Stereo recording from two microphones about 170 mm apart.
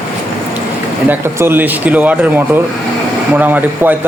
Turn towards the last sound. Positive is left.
turn(degrees=-10)  # may be behind; listen again after turning